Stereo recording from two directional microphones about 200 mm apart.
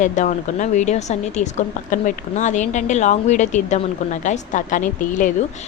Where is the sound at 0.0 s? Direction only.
40° left (ahead or behind).